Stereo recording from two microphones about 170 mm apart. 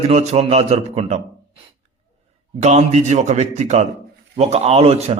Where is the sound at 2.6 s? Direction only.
40° right (ahead or behind).